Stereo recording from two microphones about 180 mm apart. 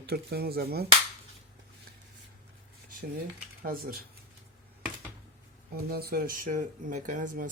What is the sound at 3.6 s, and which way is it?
Speech, 55° right (ahead or behind).